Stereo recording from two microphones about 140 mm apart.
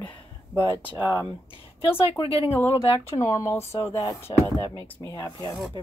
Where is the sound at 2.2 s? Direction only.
40° left (ahead or behind).